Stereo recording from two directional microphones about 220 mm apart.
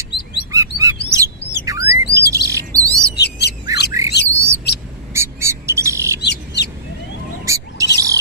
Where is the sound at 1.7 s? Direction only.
15° right (ahead or behind).